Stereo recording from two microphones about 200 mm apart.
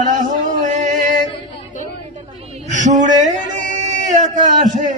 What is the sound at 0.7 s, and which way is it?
Music, 40° right (ahead or behind).